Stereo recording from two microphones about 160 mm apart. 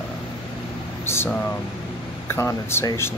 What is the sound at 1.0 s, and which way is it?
Speech, 15° left (ahead or behind).